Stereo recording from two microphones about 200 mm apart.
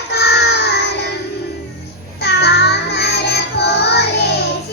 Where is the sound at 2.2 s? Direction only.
55° left (ahead or behind).